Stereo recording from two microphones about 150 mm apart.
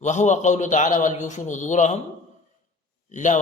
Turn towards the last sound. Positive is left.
turn(degrees=55)  # may be behind; listen again after turning